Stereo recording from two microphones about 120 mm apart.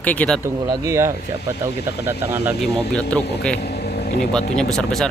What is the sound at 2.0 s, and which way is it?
Speech, 20° right (ahead or behind).